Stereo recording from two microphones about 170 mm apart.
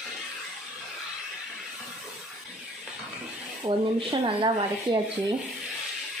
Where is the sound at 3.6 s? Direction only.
30° right (ahead or behind).